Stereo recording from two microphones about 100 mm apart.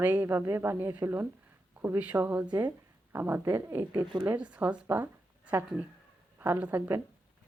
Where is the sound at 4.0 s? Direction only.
50° right (ahead or behind).